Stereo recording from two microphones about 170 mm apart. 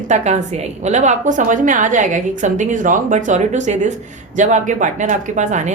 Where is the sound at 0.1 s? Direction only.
45° right (ahead or behind).